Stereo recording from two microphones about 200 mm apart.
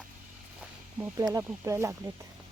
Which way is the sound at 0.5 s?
10° right (ahead or behind).